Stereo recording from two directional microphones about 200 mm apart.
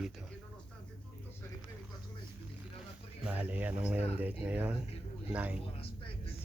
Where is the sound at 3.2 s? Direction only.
5° right (ahead or behind).